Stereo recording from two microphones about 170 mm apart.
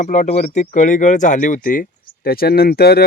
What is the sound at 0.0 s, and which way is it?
Speech, 45° left (ahead or behind).